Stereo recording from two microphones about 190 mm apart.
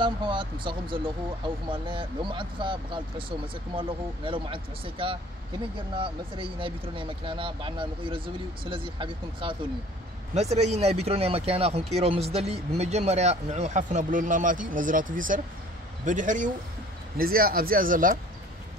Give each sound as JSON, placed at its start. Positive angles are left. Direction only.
{"t": 0.0, "sound": "speech", "side_deg": -25}